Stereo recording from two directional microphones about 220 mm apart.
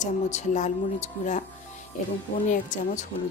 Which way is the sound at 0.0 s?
30° left (ahead or behind).